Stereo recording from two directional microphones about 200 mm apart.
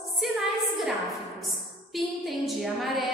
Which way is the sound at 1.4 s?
Centre (ahead or behind).